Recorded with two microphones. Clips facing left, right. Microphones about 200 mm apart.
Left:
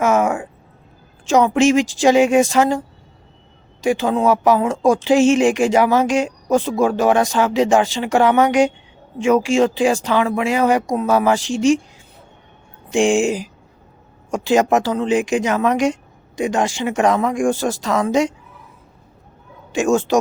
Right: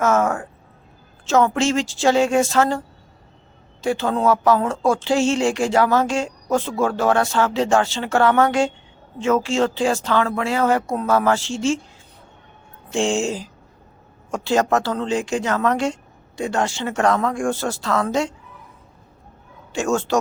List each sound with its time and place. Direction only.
0.0 s a sound: 15° left (ahead or behind)
1.2 s speech: 15° left (ahead or behind)
12.9 s speech: 15° left (ahead or behind)
19.7 s speech: 15° left (ahead or behind)